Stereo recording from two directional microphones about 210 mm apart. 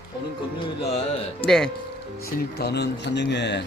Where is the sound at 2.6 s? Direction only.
50° left (ahead or behind).